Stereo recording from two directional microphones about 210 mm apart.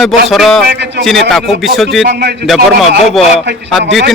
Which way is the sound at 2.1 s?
50° right (ahead or behind).